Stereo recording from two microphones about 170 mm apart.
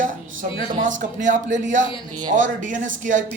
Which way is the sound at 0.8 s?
50° right (ahead or behind).